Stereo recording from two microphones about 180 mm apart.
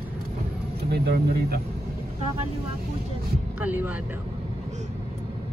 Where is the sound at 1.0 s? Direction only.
60° right (ahead or behind).